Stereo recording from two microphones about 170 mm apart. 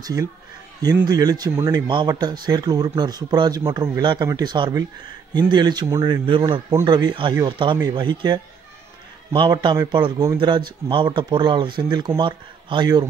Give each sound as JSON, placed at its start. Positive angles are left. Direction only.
{"t": 0.0, "sound": "speech", "side_deg": -20}
{"t": 6.2, "sound": "speech", "side_deg": -30}
{"t": 6.7, "sound": "speech", "side_deg": -20}